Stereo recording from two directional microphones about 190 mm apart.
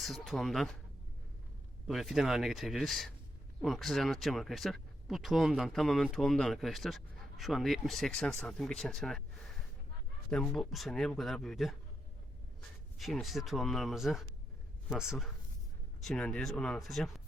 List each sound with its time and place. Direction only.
0.0 s speech: centre (ahead or behind)
1.9 s speech: centre (ahead or behind)
10.2 s speech: 5° left (ahead or behind)
13.0 s speech: centre (ahead or behind)